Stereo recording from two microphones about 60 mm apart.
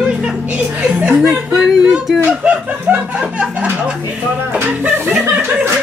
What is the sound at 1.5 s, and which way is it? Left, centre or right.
Speech, centre.